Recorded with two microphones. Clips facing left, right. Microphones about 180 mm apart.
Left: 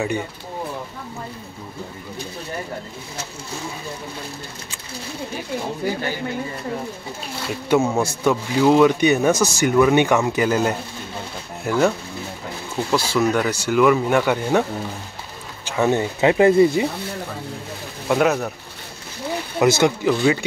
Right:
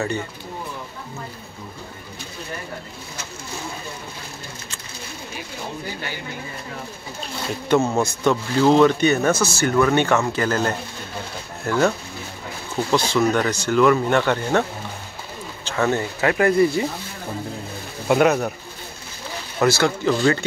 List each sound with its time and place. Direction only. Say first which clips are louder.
7.6 s speech: even; 10° left (ahead or behind)
12.9 s speech: even; 5° left (ahead or behind); by 16.8 s 20° left (ahead or behind)
18.0 s speech: right 1 dB; centre (ahead or behind)
19.6 s speech: left 2 dB; 20° left (ahead or behind)
20.1 s speech: left 1 dB; 10° left (ahead or behind)